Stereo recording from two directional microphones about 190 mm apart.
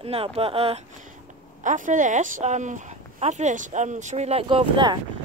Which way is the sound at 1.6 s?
45° right (ahead or behind).